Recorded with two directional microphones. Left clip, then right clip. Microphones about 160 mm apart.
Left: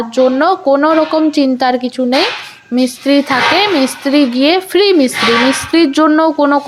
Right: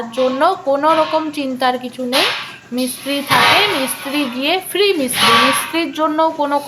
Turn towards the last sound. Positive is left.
turn(degrees=40)  # may be behind; listen again after turning